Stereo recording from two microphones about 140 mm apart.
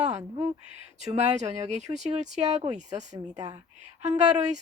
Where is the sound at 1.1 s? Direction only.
55° right (ahead or behind).